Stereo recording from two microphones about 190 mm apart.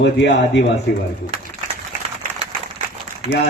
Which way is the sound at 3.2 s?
30° right (ahead or behind).